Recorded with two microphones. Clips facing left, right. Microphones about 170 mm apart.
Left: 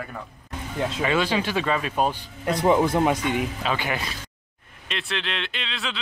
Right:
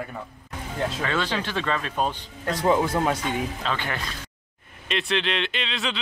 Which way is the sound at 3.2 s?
30° right (ahead or behind).